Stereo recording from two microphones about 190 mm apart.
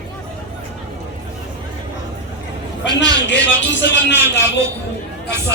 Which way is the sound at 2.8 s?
70° left (ahead or behind).